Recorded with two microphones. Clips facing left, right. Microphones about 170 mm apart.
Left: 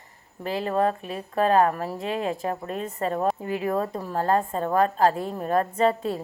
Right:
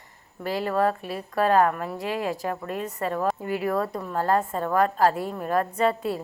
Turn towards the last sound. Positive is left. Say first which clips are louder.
# left 1 dB
turn(degrees=30)  # may be behind; listen again after turning